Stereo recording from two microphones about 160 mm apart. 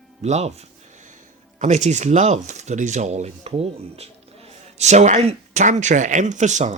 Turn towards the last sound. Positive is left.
turn(degrees=-45)  # may be behind; listen again after turning